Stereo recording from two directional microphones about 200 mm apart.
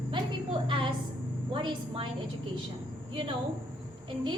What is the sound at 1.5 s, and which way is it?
Speech, 25° right (ahead or behind).